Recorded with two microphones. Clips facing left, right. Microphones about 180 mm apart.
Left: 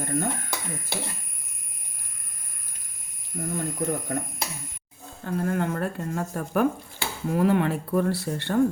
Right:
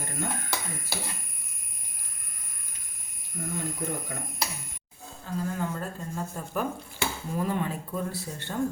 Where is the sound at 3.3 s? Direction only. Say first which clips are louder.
Left 4 dB; 40° left (ahead or behind).